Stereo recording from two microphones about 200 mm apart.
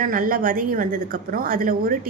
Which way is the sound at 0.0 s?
45° right (ahead or behind).